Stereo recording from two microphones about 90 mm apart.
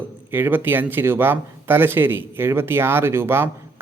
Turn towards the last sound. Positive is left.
turn(degrees=-25)  # may be behind; listen again after turning